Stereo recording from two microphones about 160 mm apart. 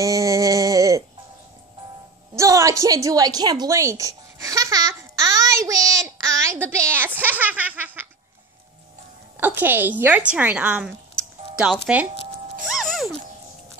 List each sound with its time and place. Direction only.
0.0 s a sound: 20° right (ahead or behind)
2.3 s a woman's voice: 20° right (ahead or behind)
5.4 s child singing: 20° right (ahead or behind)
7.2 s baby laughter: 10° right (ahead or behind)
9.4 s a woman's voice: 10° right (ahead or behind)
12.6 s music: centre (ahead or behind)